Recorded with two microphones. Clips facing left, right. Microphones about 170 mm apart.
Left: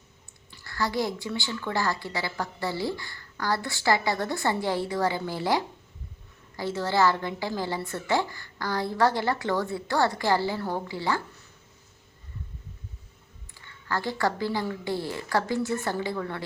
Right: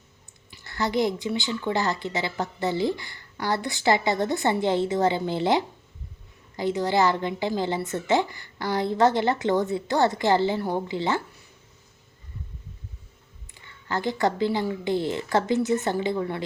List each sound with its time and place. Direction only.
0.5 s a woman's voice: 20° right (ahead or behind)
13.5 s a woman's voice: 20° right (ahead or behind)